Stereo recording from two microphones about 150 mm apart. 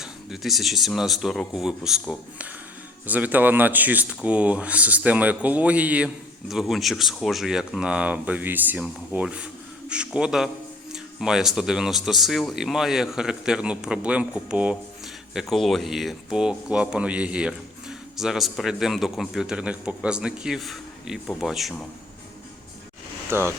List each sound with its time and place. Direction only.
0.0 s speech: centre (ahead or behind)
23.3 s speech: 15° right (ahead or behind)